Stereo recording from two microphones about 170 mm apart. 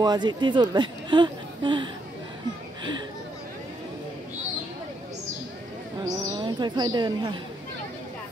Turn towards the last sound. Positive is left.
turn(degrees=-25)  # may be behind; listen again after turning